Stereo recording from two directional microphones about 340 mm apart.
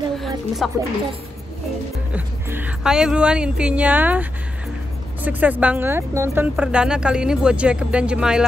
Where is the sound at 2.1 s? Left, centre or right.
Centre.